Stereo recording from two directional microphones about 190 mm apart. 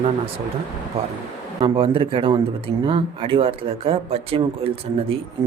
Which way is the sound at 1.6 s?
30° right (ahead or behind).